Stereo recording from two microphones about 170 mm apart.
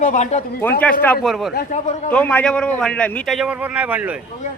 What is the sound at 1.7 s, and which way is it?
Speech, 45° left (ahead or behind).